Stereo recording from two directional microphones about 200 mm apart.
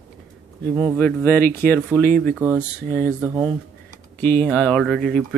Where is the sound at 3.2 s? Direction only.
5° right (ahead or behind).